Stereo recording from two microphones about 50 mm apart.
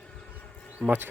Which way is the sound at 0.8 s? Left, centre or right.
Right.